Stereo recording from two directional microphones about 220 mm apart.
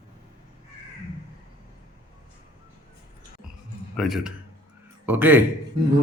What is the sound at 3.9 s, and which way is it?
A man's voice, centre (ahead or behind).